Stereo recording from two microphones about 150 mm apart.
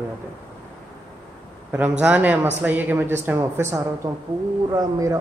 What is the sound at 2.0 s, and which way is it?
Speech, 10° right (ahead or behind).